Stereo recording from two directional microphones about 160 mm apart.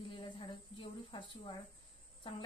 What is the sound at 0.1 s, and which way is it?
A woman's voice, 30° left (ahead or behind).